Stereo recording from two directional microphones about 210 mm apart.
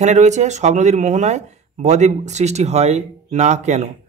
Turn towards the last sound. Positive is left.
turn(degrees=-35)  # may be behind; listen again after turning